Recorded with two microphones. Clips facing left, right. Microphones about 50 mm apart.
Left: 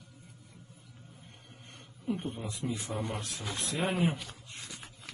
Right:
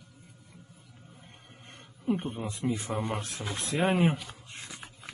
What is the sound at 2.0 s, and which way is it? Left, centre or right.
Speech, right.